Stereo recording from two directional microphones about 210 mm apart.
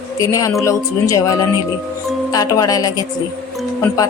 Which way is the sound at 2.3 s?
15° left (ahead or behind).